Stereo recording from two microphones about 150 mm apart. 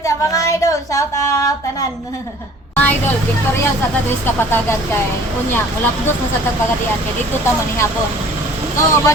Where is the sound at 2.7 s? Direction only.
10° left (ahead or behind).